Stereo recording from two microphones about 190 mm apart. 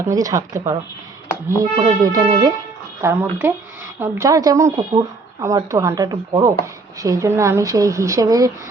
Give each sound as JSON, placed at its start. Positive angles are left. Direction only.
{"t": 0.0, "sound": "speech", "side_deg": -15}